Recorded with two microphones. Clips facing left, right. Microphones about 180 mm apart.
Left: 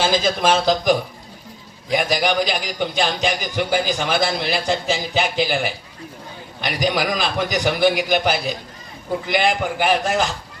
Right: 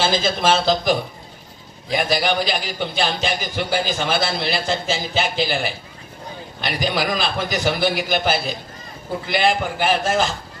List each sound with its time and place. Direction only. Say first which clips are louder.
0.0 s a man's voice: left 1 dB; 15° left (ahead or behind)